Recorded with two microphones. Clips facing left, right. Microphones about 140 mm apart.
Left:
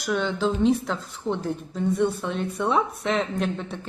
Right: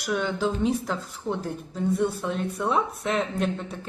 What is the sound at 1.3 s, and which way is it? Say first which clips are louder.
Speech: left 2 dB; 20° left (ahead or behind).